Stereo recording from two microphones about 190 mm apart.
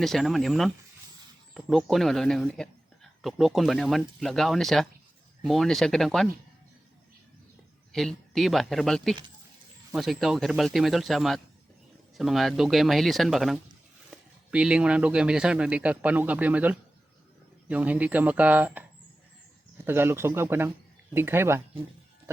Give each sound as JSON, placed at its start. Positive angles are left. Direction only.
{"t": 0.0, "sound": "speech", "side_deg": 0}
{"t": 7.9, "sound": "speech", "side_deg": 0}